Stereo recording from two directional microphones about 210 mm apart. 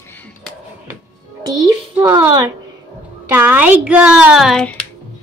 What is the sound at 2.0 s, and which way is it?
A child's voice, 15° right (ahead or behind).